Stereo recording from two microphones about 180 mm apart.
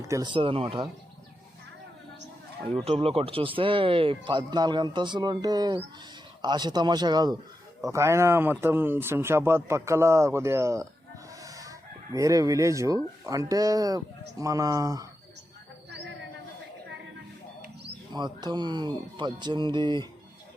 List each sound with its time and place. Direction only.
0.0 s speech: 20° right (ahead or behind)
2.8 s speech: 35° right (ahead or behind); by 10.8 s 15° right (ahead or behind)
11.3 s fowl: 20° right (ahead or behind)
13.2 s speech: 20° right (ahead or behind)
18.1 s speech: 25° right (ahead or behind)